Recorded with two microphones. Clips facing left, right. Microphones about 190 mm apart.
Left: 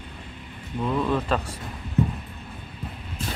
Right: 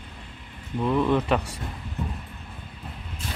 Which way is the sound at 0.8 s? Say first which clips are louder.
Right 2 dB; 15° right (ahead or behind).